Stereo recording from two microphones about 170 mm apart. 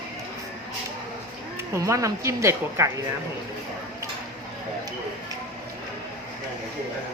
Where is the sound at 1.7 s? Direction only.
20° right (ahead or behind).